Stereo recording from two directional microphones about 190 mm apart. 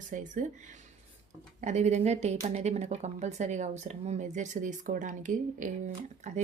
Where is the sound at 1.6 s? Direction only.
40° right (ahead or behind).